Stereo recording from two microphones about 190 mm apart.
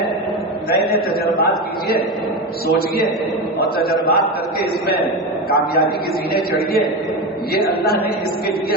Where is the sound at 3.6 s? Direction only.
55° left (ahead or behind).